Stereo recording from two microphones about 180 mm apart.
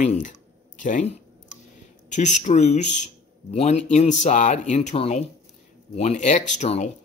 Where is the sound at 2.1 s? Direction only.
40° left (ahead or behind).